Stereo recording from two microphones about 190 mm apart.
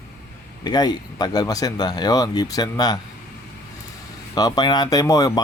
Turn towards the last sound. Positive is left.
turn(degrees=20)  # may be behind; listen again after turning